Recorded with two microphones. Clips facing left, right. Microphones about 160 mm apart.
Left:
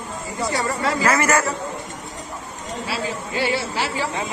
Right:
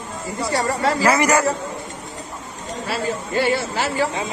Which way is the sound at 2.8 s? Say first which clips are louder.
Right 3 dB; 50° right (ahead or behind).